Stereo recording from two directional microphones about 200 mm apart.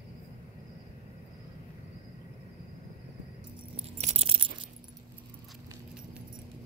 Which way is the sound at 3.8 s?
30° right (ahead or behind).